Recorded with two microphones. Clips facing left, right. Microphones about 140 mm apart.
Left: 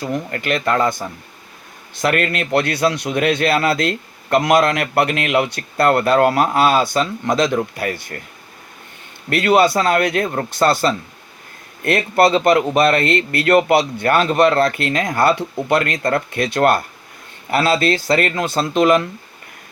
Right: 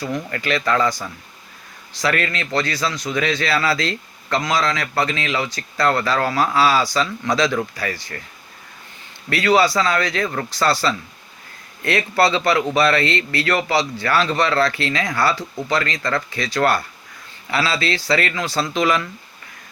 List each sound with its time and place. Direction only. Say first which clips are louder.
0.0 s speech: left 2 dB; 45° left (ahead or behind)
9.5 s speech: left 2 dB; 55° left (ahead or behind)